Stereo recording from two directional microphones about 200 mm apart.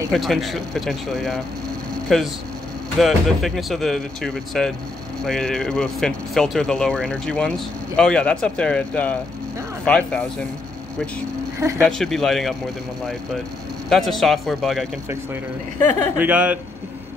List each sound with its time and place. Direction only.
0.1 s speech: centre (ahead or behind)
11.8 s speech: centre (ahead or behind)
13.8 s speech: centre (ahead or behind)
15.8 s speech: 35° right (ahead or behind)
16.2 s a man's voice: 5° right (ahead or behind)